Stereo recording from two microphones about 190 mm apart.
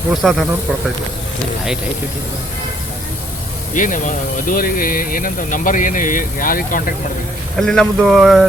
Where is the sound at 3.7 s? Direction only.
45° left (ahead or behind).